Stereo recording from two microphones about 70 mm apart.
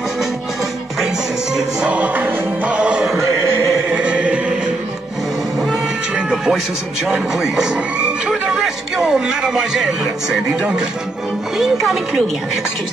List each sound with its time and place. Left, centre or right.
1.8 s music: centre
3.7 s opera: centre
5.6 s cat: centre
7.1 s speech: centre